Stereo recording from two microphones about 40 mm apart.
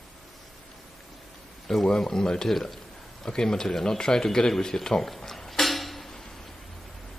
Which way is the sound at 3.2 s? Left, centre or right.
Centre.